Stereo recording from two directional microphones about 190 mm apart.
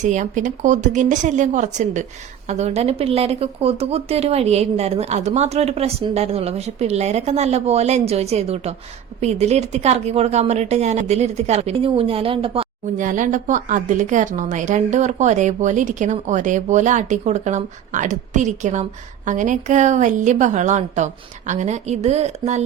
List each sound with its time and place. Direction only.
0.0 s a woman's voice: 40° right (ahead or behind)
13.0 s a woman's voice: 45° right (ahead or behind)